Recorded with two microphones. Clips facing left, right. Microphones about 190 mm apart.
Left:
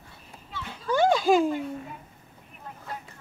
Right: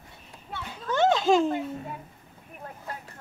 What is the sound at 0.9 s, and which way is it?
Children playing, 10° left (ahead or behind).